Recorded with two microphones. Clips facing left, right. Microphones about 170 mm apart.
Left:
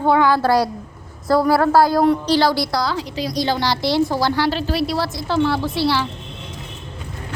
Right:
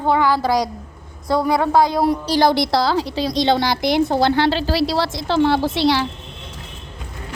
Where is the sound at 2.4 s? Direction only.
20° right (ahead or behind).